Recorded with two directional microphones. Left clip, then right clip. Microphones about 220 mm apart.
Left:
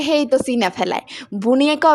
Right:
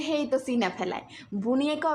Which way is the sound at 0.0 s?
40° left (ahead or behind).